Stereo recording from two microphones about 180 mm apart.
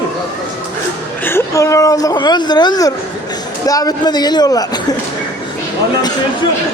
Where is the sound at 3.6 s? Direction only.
20° left (ahead or behind).